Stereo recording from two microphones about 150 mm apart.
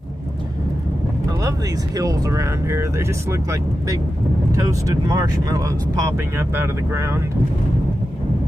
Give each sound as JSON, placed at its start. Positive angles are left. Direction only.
{"t": 2.0, "sound": "speech", "side_deg": -25}
{"t": 4.5, "sound": "speech", "side_deg": -20}